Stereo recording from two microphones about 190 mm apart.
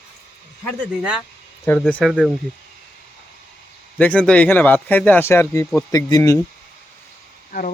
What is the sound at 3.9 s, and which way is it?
Speech, 5° left (ahead or behind).